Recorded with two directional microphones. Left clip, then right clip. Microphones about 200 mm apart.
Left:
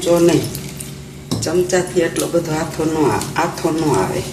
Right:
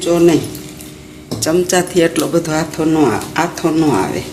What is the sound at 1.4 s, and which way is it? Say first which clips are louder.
A woman's voice: right 3 dB; 55° right (ahead or behind).